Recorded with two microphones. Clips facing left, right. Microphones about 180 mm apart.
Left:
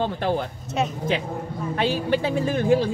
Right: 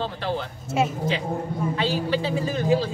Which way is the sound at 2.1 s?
55° left (ahead or behind).